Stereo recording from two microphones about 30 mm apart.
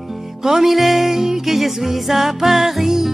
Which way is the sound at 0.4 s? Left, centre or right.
Centre.